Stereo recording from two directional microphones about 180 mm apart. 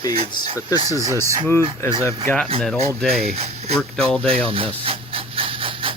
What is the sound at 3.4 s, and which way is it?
Speech, 35° right (ahead or behind).